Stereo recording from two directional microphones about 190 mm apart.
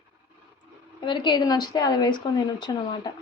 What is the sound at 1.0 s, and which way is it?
Speech, 25° left (ahead or behind).